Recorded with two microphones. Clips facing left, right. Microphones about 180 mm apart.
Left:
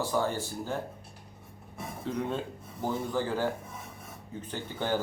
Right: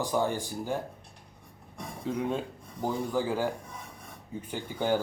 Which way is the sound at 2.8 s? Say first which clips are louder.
Right 1 dB; 10° right (ahead or behind).